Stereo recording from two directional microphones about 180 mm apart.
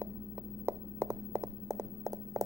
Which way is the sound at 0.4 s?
15° right (ahead or behind).